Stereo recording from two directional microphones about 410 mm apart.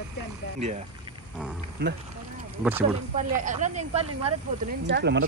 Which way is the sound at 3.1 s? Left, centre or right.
Centre.